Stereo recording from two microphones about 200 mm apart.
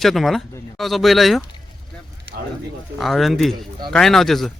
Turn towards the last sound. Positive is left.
turn(degrees=0)  # may be behind; listen again after turning